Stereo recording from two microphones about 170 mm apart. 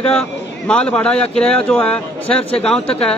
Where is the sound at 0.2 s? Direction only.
5° left (ahead or behind).